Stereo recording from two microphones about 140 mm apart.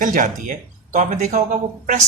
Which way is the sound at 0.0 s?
70° right (ahead or behind).